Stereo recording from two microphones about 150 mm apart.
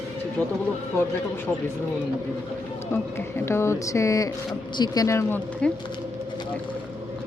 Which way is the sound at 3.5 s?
15° left (ahead or behind).